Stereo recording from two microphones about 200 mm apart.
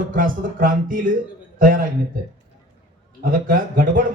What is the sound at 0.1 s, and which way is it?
A man's voice, 40° right (ahead or behind).